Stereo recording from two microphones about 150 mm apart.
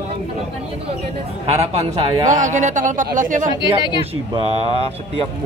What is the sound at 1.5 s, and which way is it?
A man's voice, 45° right (ahead or behind).